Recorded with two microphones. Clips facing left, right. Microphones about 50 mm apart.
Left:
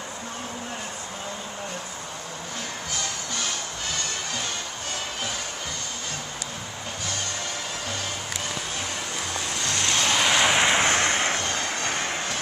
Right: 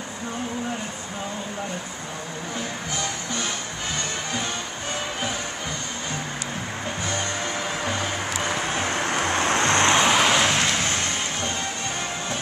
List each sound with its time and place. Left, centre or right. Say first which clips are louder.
7.8 s music: right 5 dB; right
8.5 s vehicle: right 8 dB; right
9.9 s vehicle: right 4 dB; centre
10.4 s vehicle: left 1 dB; centre
10.7 s vehicle: left 4 dB; left
11.5 s music: left 1 dB; left